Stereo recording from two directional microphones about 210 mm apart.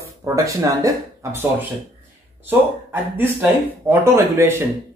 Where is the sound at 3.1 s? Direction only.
10° right (ahead or behind).